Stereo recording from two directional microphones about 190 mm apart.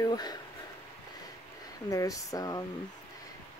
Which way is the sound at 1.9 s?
20° left (ahead or behind).